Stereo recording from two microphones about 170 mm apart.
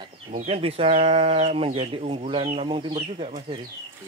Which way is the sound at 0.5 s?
35° right (ahead or behind).